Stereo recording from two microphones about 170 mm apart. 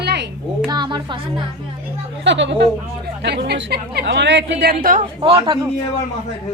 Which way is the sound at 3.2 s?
75° right (ahead or behind).